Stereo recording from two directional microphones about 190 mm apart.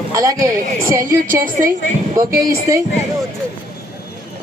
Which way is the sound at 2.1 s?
15° right (ahead or behind).